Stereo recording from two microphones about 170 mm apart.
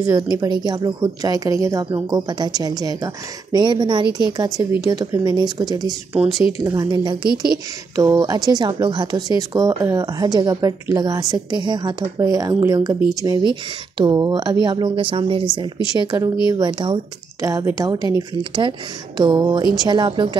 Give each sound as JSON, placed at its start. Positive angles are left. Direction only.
{"t": 0.0, "sound": "speech", "side_deg": -20}
{"t": 5.9, "sound": "speech", "side_deg": 0}
{"t": 6.6, "sound": "speech", "side_deg": -20}